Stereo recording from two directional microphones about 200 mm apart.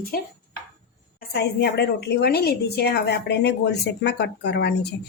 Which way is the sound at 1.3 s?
55° left (ahead or behind).